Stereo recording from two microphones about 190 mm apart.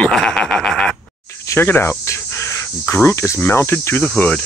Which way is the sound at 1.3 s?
15° left (ahead or behind).